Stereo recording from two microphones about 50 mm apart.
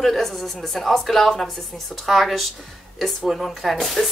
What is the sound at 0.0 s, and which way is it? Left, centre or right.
Speech, centre.